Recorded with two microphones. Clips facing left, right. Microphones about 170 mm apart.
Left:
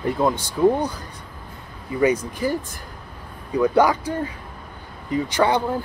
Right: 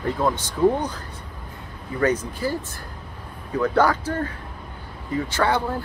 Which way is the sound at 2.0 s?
10° left (ahead or behind).